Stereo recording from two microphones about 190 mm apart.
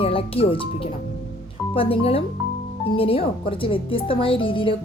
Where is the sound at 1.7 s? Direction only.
30° left (ahead or behind).